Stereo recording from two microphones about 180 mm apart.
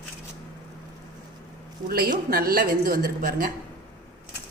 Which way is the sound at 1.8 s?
55° right (ahead or behind).